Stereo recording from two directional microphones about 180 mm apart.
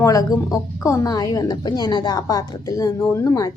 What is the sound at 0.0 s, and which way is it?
A woman's voice, 20° left (ahead or behind).